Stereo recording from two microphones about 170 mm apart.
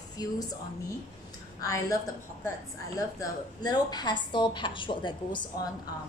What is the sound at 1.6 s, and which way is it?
Speech, 20° left (ahead or behind).